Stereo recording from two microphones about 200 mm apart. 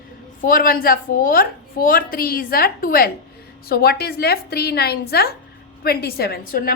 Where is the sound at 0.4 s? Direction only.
45° left (ahead or behind).